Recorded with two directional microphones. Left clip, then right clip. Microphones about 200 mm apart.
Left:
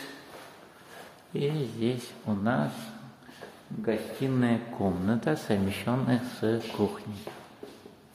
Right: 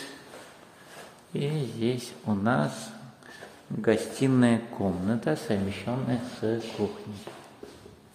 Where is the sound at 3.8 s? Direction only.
30° right (ahead or behind).